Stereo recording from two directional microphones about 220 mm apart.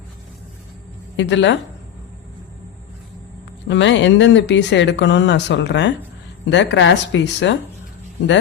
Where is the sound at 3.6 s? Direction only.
55° left (ahead or behind).